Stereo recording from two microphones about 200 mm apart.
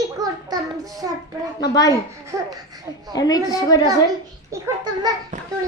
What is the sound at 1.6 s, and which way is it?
Speech, 20° left (ahead or behind).